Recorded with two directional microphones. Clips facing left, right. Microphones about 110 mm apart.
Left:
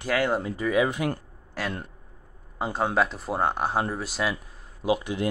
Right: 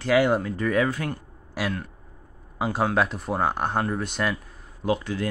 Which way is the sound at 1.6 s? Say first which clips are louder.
Right 3 dB; 10° right (ahead or behind).